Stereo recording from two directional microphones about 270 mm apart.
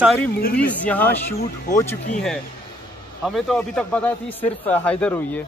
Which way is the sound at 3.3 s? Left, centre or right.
Centre.